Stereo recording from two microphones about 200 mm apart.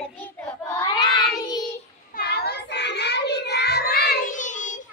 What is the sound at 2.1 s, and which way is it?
Child singing, 50° left (ahead or behind).